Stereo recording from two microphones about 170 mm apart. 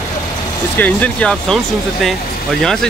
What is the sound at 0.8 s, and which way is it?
Speech, 10° left (ahead or behind).